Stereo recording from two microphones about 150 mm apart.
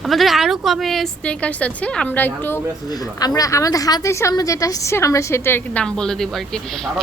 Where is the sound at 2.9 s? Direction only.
25° left (ahead or behind); by 6.9 s 5° left (ahead or behind).